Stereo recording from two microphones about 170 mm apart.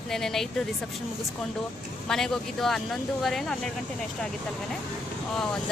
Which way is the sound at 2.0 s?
5° left (ahead or behind).